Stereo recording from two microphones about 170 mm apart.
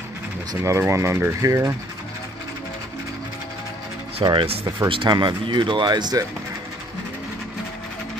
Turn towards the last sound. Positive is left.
turn(degrees=-25)  # may be behind; listen again after turning